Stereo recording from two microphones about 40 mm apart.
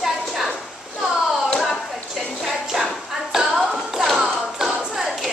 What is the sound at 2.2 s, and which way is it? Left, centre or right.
Clapping, centre.